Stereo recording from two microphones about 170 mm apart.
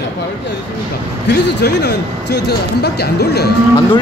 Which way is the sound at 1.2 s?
85° left.